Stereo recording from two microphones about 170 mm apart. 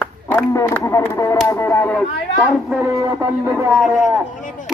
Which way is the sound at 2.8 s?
5° right (ahead or behind).